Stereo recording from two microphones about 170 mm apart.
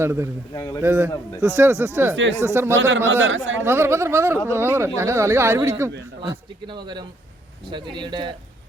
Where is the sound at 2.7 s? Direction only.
90° right.